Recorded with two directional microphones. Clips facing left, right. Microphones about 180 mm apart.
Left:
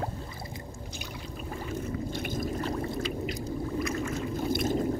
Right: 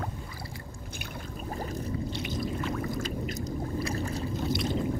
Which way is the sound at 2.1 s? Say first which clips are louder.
Left 1 dB; 50° left (ahead or behind).